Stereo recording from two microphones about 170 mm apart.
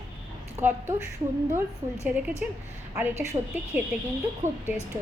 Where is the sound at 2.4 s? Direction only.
5° right (ahead or behind).